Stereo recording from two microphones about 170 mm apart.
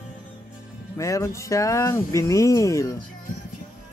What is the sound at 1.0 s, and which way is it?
Speech, 15° left (ahead or behind).